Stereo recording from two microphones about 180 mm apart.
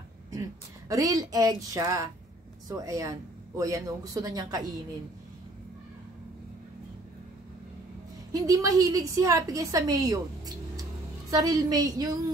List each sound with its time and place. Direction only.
0.3 s a woman's voice: 20° right (ahead or behind)
8.3 s a woman's voice: 20° right (ahead or behind)